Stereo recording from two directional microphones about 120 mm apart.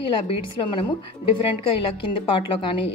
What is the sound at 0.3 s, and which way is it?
Speech, 40° left (ahead or behind).